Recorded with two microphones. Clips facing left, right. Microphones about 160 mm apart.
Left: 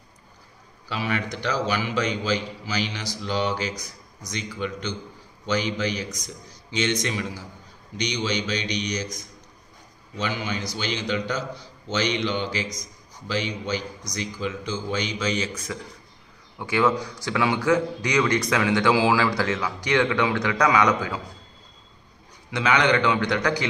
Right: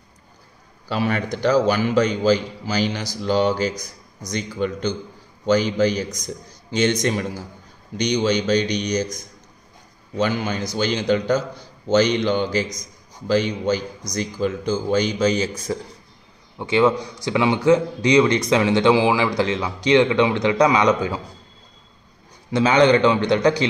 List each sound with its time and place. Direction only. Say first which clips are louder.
0.8 s a man's voice: right 5 dB; 45° right (ahead or behind)
16.5 s a man's voice: right 5 dB; 20° right (ahead or behind)
22.5 s a man's voice: right 6 dB; 30° right (ahead or behind)